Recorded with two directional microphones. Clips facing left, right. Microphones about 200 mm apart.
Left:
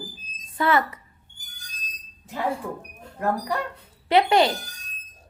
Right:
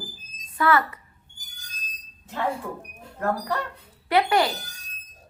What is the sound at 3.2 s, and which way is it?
Speech, 15° left (ahead or behind).